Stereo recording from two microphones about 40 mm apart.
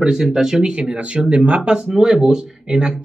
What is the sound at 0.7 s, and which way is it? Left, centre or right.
Speech, right.